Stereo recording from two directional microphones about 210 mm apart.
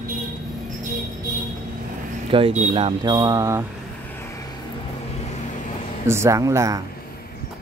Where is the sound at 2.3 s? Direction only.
25° right (ahead or behind).